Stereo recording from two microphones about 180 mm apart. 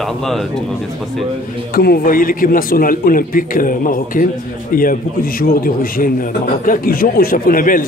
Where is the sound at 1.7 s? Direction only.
55° left (ahead or behind).